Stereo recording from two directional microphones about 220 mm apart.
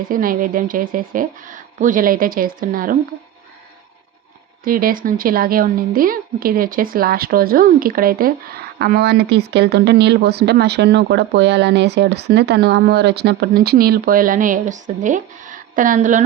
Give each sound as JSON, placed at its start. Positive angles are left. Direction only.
{"t": 0.1, "sound": "a woman's voice", "side_deg": -40}
{"t": 4.6, "sound": "speech", "side_deg": -40}